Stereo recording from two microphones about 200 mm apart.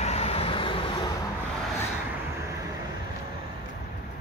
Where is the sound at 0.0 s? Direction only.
30° left (ahead or behind).